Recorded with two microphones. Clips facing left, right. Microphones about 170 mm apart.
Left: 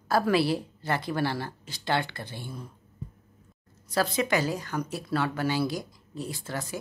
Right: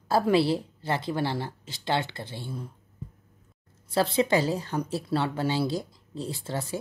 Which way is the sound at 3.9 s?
30° right (ahead or behind).